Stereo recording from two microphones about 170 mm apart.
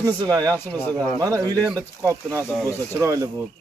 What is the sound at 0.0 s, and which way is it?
Speech, 25° right (ahead or behind).